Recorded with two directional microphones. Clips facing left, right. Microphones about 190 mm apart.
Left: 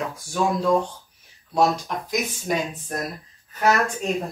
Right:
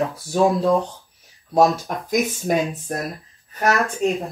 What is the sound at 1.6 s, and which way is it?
Speech, 45° right (ahead or behind).